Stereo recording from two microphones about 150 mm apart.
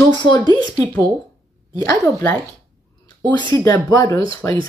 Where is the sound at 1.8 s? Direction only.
20° left (ahead or behind).